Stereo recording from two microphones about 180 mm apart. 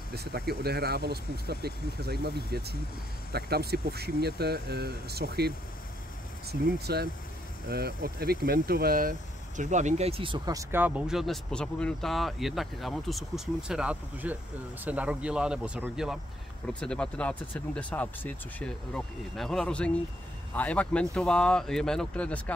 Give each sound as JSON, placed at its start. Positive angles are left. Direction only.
{"t": 0.1, "sound": "speech", "side_deg": -60}
{"t": 6.6, "sound": "speech", "side_deg": -60}
{"t": 9.6, "sound": "speech", "side_deg": -40}